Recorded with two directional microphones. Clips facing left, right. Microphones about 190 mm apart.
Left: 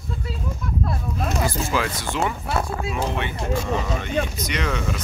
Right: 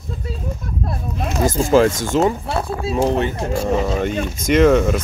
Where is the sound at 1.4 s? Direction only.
45° right (ahead or behind).